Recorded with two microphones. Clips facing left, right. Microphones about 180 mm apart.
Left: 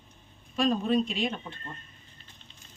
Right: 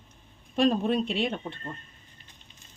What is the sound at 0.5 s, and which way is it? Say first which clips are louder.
Speech: right 2 dB; 60° right (ahead or behind).